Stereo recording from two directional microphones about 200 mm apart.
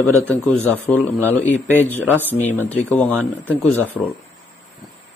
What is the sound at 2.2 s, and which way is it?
Speech, 10° left (ahead or behind).